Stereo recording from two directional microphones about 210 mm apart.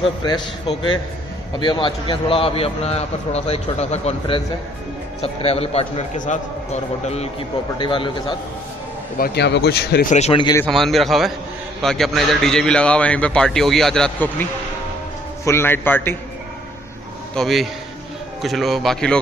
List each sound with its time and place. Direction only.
0.2 s a man's voice: 20° left (ahead or behind)
9.2 s speech: 50° left (ahead or behind)
10.1 s a man's voice: 30° left (ahead or behind)
10.6 s a man's voice: centre (ahead or behind)
17.4 s a man's voice: centre (ahead or behind)